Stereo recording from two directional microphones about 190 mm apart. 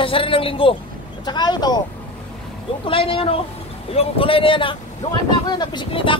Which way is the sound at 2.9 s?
30° left (ahead or behind).